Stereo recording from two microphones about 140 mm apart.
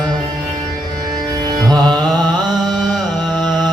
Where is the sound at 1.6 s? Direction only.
30° right (ahead or behind).